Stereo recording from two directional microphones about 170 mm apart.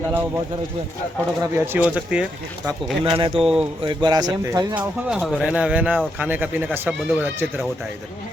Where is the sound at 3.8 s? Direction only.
25° right (ahead or behind).